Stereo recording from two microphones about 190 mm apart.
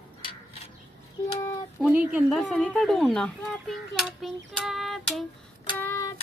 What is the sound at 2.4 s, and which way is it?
A child's voice, 5° left (ahead or behind).